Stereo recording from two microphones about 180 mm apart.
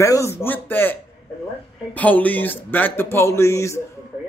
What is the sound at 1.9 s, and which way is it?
Speech, 10° left (ahead or behind).